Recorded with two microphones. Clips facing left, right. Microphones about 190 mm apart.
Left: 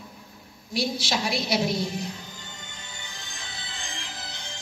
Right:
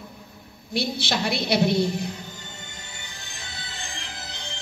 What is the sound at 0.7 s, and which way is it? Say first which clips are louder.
A woman's voice: right 1 dB; 60° right (ahead or behind).